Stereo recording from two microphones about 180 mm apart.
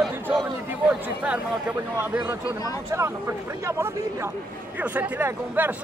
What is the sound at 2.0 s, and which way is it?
A man's voice, 10° right (ahead or behind).